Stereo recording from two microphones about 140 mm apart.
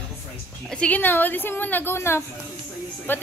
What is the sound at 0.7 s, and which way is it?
A woman's voice, 10° left (ahead or behind).